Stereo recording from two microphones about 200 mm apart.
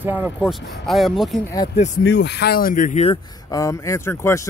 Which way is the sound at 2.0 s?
60° left (ahead or behind).